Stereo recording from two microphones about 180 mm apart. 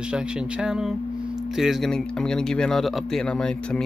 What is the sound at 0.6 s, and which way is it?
Speech, 5° right (ahead or behind).